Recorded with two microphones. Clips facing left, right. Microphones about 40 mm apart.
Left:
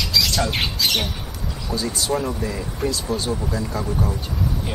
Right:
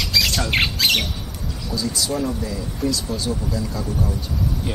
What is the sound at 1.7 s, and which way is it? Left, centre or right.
Speech, left.